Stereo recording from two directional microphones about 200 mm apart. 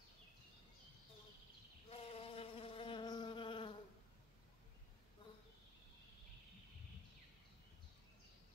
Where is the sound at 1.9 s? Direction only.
30° left (ahead or behind).